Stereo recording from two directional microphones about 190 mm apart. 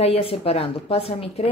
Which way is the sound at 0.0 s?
30° left (ahead or behind).